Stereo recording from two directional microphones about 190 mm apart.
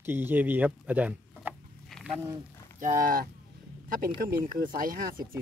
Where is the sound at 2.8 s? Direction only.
45° right (ahead or behind).